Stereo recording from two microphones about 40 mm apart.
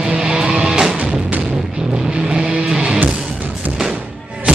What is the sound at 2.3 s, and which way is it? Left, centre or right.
Vehicle, centre.